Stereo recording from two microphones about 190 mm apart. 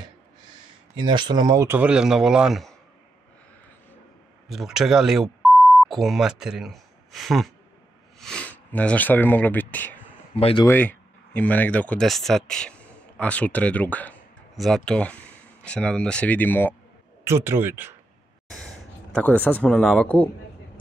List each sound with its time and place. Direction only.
1.0 s speech: 25° right (ahead or behind); by 2.7 s centre (ahead or behind)
4.5 s speech: centre (ahead or behind)
10.3 s speech: 30° left (ahead or behind)
10.7 s speech: 10° left (ahead or behind)
17.3 s speech: 15° right (ahead or behind)
19.1 s a man's voice: 10° left (ahead or behind)